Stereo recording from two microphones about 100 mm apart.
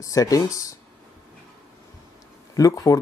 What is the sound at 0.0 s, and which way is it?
Speech, 35° left (ahead or behind).